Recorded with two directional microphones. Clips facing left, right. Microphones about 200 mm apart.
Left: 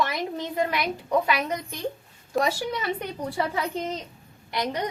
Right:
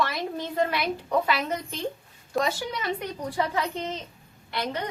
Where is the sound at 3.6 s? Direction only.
10° left (ahead or behind).